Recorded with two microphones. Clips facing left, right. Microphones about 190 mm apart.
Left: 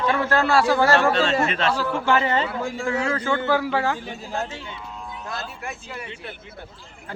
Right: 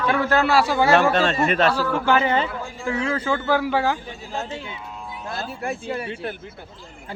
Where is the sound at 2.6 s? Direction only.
85° left.